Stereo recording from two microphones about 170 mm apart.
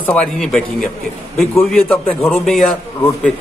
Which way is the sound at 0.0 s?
5° left (ahead or behind).